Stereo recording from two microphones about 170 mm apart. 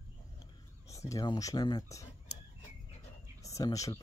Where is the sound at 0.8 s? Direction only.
20° left (ahead or behind).